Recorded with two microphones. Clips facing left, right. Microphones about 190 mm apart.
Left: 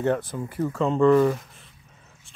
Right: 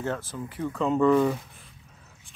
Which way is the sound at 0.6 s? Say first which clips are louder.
Left 2 dB; 5° left (ahead or behind).